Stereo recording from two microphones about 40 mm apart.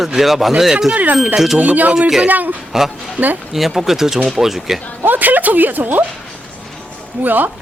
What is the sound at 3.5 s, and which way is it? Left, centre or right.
Speech, centre.